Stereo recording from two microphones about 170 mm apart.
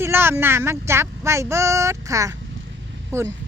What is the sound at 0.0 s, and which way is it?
Speech, 15° right (ahead or behind).